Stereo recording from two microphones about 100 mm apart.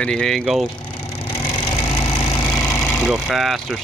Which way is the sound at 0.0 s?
10° left (ahead or behind).